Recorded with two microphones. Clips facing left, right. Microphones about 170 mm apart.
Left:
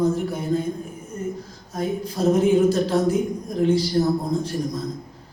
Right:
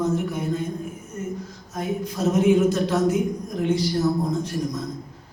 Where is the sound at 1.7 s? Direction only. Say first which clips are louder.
Left 2 dB; 35° left (ahead or behind).